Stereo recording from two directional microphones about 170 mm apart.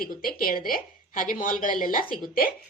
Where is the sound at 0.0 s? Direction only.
60° left (ahead or behind).